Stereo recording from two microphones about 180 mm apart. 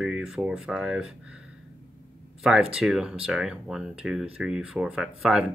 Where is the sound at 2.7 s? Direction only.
5° right (ahead or behind).